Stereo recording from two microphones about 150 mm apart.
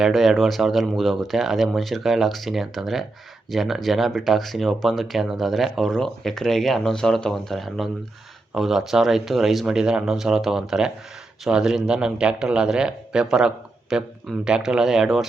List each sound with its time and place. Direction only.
0.0 s speech: centre (ahead or behind)